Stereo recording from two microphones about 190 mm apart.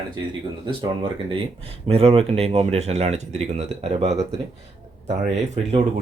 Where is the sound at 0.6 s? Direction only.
25° right (ahead or behind).